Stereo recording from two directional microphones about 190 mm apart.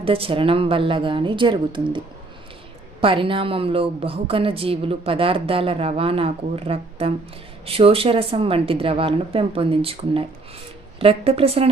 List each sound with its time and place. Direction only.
0.0 s a woman's voice: 30° right (ahead or behind)
3.0 s a woman's voice: 30° right (ahead or behind)